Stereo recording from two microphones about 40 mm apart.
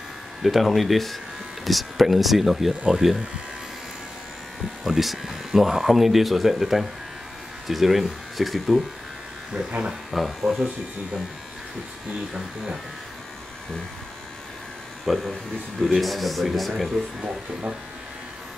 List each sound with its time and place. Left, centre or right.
0.4 s speech: centre
4.8 s speech: centre
9.5 s speech: right
10.4 s speech: centre
15.1 s speech: centre
17.2 s speech: right